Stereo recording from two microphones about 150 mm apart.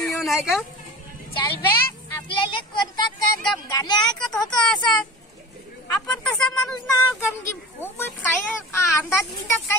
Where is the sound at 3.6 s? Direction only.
25° left (ahead or behind).